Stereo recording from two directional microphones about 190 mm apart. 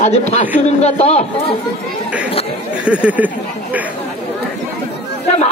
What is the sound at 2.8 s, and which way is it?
Speech, 5° right (ahead or behind).